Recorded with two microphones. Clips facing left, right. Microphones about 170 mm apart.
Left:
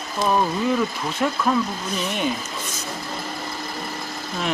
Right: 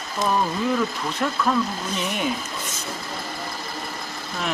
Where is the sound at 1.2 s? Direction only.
5° left (ahead or behind).